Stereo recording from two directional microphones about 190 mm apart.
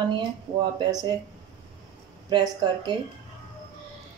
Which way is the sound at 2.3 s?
20° right (ahead or behind).